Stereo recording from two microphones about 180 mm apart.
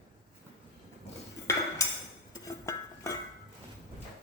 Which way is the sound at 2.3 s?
15° left (ahead or behind).